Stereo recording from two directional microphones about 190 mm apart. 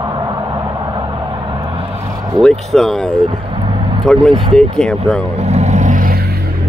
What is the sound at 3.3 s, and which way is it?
Vehicle, 30° right (ahead or behind).